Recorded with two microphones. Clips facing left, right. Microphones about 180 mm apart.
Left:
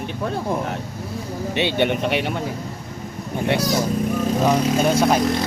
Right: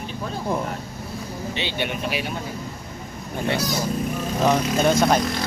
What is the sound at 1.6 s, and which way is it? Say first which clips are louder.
Speech: left 9 dB; 60° left (ahead or behind).